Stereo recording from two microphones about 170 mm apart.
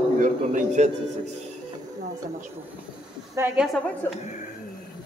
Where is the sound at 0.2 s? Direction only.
45° right (ahead or behind).